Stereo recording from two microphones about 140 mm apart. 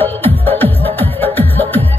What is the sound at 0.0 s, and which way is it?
Music, 15° left (ahead or behind).